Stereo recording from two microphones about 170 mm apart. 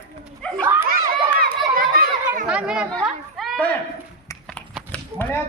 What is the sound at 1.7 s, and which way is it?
Children playing, 60° right (ahead or behind).